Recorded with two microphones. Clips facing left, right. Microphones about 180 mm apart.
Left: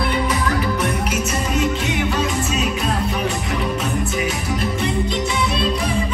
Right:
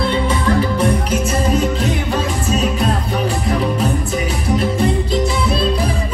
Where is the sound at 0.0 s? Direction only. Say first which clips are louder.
Right 3 dB; 30° right (ahead or behind).